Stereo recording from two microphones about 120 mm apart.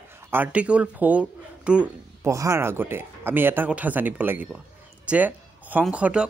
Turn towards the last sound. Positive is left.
turn(degrees=-10)  # may be behind; listen again after turning